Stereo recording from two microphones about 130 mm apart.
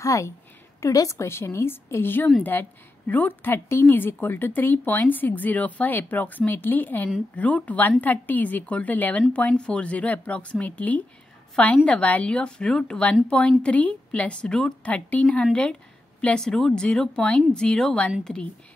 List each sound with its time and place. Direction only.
0.0 s a woman's voice: 25° left (ahead or behind); by 18.5 s 5° left (ahead or behind)